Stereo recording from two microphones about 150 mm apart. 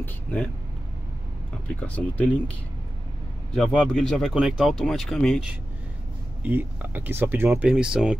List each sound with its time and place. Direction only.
0.0 s speech: 10° left (ahead or behind)
1.8 s speech: 10° left (ahead or behind)
3.5 s speech: 5° left (ahead or behind)
6.4 s speech: 10° right (ahead or behind)